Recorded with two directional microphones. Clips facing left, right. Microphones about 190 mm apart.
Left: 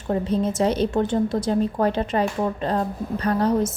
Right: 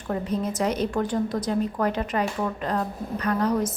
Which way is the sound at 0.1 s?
30° left (ahead or behind).